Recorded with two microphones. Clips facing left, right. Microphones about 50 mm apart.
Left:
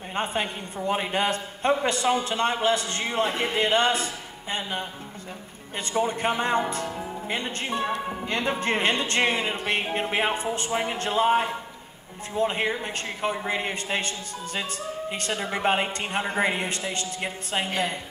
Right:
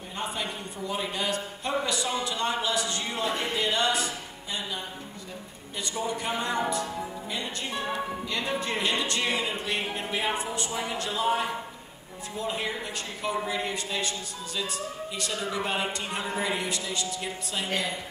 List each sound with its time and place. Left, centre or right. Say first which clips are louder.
0.1 s a man's voice: left 5 dB; left